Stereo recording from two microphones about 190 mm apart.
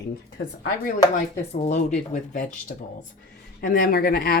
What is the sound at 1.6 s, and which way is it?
Speech, 40° left (ahead or behind).